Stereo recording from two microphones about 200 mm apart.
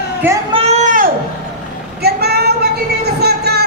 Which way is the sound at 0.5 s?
30° right (ahead or behind).